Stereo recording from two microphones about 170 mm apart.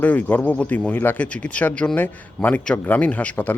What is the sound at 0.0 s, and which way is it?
Speech, 10° left (ahead or behind).